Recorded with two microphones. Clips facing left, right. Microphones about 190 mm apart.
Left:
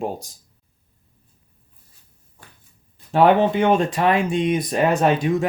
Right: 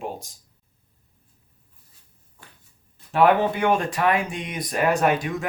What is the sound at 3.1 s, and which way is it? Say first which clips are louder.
Speech: left 3 dB; 25° left (ahead or behind).